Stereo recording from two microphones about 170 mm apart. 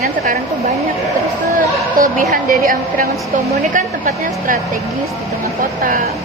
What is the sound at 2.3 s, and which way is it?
A woman's voice, 55° right (ahead or behind).